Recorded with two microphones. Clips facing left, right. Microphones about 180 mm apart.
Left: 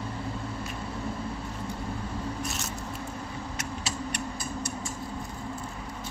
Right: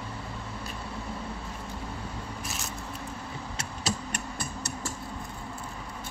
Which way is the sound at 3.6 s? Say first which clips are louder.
Right 2 dB; 40° right (ahead or behind).